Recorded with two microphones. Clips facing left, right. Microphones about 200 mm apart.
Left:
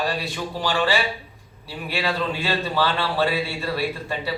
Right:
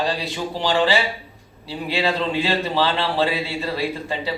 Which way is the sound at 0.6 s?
20° right (ahead or behind).